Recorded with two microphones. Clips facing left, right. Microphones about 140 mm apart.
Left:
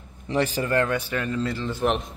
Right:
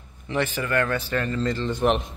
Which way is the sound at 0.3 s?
35° left (ahead or behind).